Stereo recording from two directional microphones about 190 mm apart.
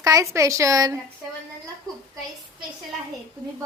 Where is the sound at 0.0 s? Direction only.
15° right (ahead or behind).